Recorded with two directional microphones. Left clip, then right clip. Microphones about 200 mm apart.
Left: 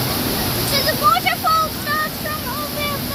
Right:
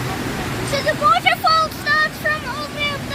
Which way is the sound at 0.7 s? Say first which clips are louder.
Right 1 dB; 35° right (ahead or behind).